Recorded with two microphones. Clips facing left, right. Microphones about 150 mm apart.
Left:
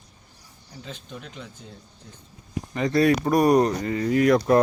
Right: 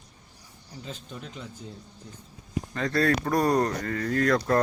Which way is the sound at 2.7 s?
15° left (ahead or behind).